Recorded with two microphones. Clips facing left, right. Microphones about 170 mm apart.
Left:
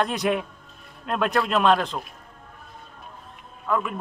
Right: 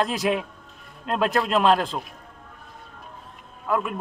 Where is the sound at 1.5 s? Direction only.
5° right (ahead or behind).